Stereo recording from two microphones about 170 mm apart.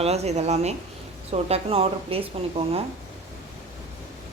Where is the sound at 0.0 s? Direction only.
40° right (ahead or behind).